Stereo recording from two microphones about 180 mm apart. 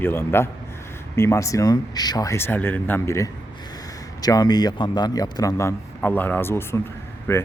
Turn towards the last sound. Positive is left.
turn(degrees=15)  # may be behind; listen again after turning